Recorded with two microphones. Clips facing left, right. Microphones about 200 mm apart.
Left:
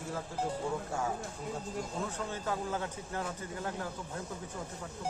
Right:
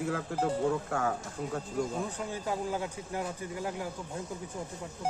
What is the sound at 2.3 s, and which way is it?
Speech, 15° right (ahead or behind).